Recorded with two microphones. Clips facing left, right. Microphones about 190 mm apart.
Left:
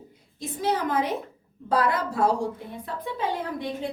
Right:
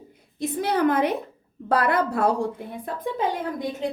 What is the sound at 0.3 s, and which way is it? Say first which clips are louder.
A woman's voice: right 3 dB; 60° right (ahead or behind).